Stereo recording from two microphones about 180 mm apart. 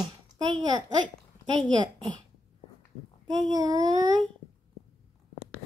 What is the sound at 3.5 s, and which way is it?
Speech, 20° right (ahead or behind).